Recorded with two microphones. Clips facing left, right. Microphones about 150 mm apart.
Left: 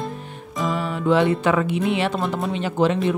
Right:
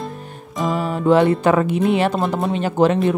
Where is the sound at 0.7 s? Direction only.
45° right (ahead or behind).